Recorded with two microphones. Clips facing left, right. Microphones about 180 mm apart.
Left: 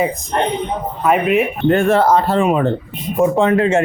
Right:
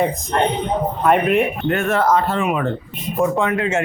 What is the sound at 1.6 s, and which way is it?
Speech, 30° left (ahead or behind).